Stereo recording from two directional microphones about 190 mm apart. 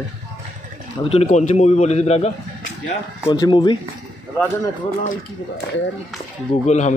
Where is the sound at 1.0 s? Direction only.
30° left (ahead or behind).